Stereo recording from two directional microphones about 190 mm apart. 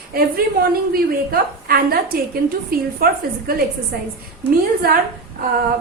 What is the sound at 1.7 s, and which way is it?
A woman's voice, 55° right (ahead or behind).